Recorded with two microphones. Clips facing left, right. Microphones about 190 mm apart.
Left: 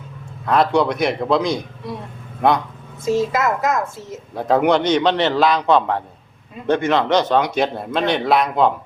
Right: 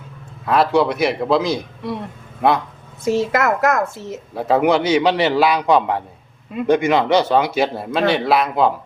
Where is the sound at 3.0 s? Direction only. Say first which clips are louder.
Right 1 dB; 65° right (ahead or behind).